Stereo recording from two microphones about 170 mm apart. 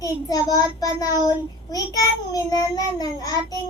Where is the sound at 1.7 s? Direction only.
20° left (ahead or behind).